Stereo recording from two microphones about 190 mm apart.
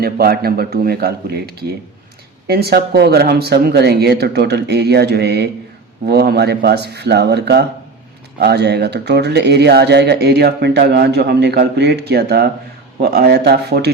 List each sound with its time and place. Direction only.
0.0 s speech: 55° right (ahead or behind)